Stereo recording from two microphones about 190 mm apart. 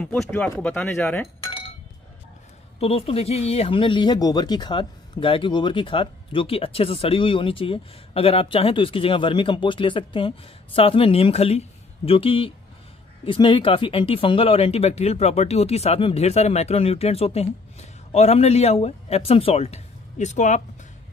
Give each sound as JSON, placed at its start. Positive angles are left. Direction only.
{"t": 0.0, "sound": "speech", "side_deg": 5}
{"t": 2.8, "sound": "speech", "side_deg": 30}